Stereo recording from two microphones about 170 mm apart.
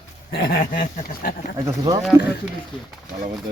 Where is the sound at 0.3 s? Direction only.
70° left (ahead or behind).